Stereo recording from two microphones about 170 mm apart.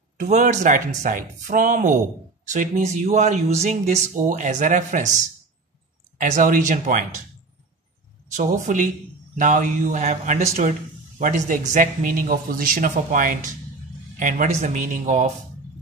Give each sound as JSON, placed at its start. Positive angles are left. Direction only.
{"t": 0.2, "sound": "speech", "side_deg": -50}
{"t": 6.1, "sound": "speech", "side_deg": -50}
{"t": 8.4, "sound": "speech", "side_deg": -45}